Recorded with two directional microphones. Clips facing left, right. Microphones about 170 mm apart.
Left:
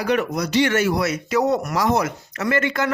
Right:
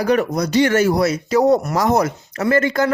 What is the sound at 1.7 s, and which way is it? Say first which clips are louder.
Speech: right 3 dB; 45° right (ahead or behind).